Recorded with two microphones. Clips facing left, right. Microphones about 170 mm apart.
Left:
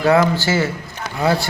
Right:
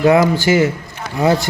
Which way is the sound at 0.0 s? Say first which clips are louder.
Right 3 dB; 15° right (ahead or behind).